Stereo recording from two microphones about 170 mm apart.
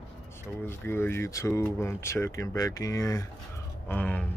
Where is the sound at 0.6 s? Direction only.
15° left (ahead or behind).